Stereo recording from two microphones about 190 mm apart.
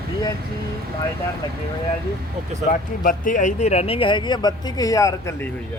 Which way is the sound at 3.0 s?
45° left (ahead or behind).